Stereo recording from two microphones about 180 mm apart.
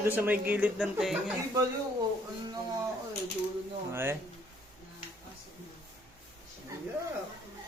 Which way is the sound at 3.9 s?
15° right (ahead or behind).